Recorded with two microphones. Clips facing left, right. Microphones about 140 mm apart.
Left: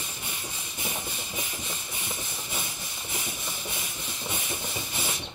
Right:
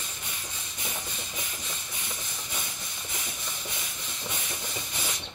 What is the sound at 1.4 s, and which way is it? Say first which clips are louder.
Engine: left 3 dB; 25° left (ahead or behind).